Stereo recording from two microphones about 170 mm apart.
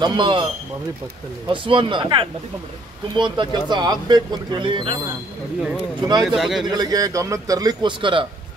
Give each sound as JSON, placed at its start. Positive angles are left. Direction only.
{"t": 0.0, "sound": "speech", "side_deg": -30}
{"t": 1.5, "sound": "speech", "side_deg": -30}
{"t": 6.2, "sound": "speech", "side_deg": 0}
{"t": 6.7, "sound": "speech", "side_deg": -20}